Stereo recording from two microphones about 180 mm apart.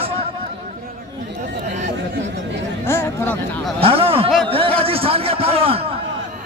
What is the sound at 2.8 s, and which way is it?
Chatter, 15° left (ahead or behind).